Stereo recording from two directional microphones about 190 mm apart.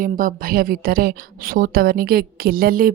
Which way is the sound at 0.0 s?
45° right (ahead or behind).